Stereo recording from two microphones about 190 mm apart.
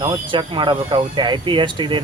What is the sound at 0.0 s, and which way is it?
Speech, 20° right (ahead or behind).